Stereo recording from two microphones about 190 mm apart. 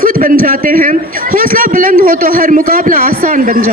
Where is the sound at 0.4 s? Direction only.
45° right (ahead or behind).